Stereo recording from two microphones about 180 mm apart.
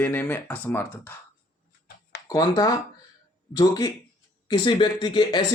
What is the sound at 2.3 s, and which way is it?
Speech, 20° left (ahead or behind).